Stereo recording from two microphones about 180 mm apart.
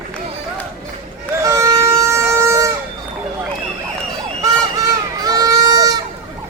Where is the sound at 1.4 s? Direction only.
15° right (ahead or behind).